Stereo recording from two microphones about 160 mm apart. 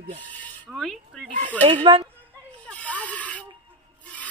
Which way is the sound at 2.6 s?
10° left (ahead or behind).